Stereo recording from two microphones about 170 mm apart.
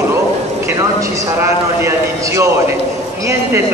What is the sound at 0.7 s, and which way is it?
A man's voice, 20° right (ahead or behind).